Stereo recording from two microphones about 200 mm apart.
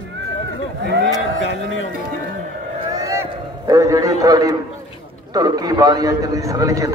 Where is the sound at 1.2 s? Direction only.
70° left (ahead or behind).